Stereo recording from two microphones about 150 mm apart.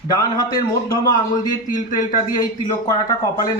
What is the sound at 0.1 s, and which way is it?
Speech, 25° left (ahead or behind).